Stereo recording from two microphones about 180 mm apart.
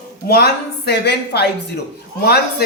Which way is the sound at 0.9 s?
65° left (ahead or behind).